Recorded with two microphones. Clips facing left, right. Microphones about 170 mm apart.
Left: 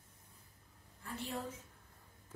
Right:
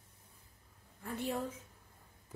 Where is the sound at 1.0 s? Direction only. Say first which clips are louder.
Right 6 dB; 55° right (ahead or behind).